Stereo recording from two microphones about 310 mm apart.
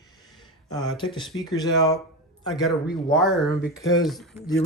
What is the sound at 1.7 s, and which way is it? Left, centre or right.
Speech, centre.